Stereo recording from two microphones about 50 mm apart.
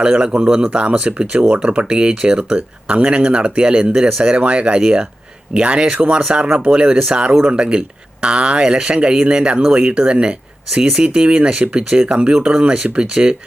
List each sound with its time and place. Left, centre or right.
0.0 s speech: centre